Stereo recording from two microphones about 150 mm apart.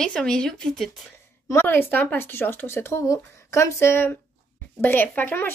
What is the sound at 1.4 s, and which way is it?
Speech, 15° left (ahead or behind).